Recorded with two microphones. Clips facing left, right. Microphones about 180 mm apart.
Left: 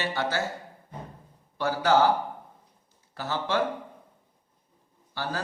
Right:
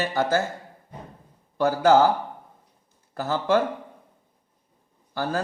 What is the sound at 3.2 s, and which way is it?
Speech, 50° right (ahead or behind).